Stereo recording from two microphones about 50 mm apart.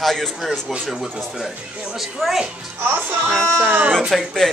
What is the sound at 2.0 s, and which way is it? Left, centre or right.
Speech, centre.